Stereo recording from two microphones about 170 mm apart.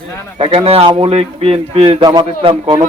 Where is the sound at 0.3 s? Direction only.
35° right (ahead or behind).